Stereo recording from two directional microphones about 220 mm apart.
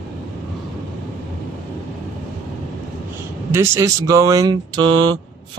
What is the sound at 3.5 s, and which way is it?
Speech, 15° right (ahead or behind).